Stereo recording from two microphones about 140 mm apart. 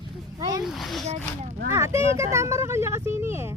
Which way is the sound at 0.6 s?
Centre (ahead or behind).